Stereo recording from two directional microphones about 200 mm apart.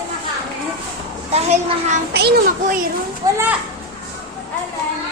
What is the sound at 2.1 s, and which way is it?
Speech, 50° right (ahead or behind).